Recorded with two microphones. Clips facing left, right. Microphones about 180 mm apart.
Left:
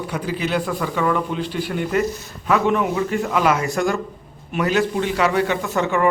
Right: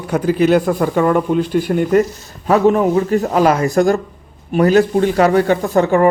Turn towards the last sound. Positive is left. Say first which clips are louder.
# right 7 dB
turn(degrees=-40)  # may be behind; listen again after turning